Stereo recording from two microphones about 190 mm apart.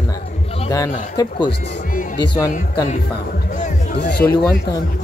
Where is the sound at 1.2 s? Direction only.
20° left (ahead or behind).